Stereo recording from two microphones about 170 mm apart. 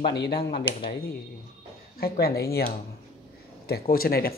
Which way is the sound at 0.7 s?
30° left (ahead or behind).